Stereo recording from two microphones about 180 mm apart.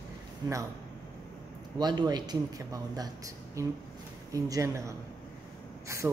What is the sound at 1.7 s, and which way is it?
A man's voice, 25° right (ahead or behind).